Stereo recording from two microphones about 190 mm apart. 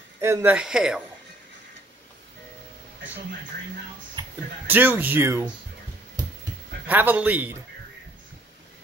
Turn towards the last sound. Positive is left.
turn(degrees=-10)  # may be behind; listen again after turning